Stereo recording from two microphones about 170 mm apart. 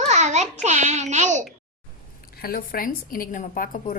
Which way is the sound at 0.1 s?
45° right (ahead or behind).